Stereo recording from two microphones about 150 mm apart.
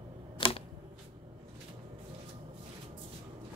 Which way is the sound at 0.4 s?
40° left (ahead or behind).